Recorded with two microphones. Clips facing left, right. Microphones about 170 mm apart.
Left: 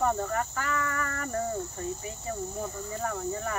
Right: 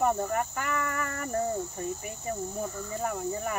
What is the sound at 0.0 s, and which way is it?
Speech, 15° right (ahead or behind).